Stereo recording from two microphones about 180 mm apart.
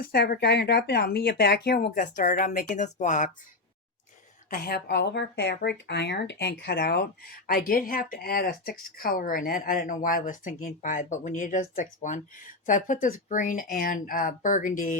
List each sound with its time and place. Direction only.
0.0 s speech: 60° left (ahead or behind); by 3.3 s 45° left (ahead or behind)
4.4 s speech: 55° left (ahead or behind)